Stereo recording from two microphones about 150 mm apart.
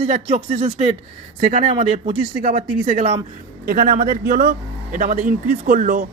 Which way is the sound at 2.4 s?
60° right (ahead or behind).